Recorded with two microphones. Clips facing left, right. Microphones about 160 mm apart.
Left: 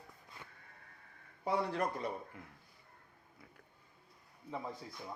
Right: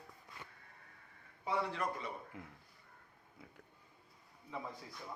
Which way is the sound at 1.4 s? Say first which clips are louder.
Left 3 dB; 40° left (ahead or behind).